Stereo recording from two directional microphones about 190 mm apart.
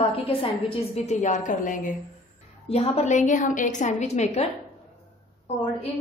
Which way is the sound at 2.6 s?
30° left (ahead or behind).